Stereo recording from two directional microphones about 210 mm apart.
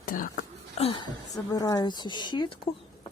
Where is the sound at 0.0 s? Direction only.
40° left (ahead or behind).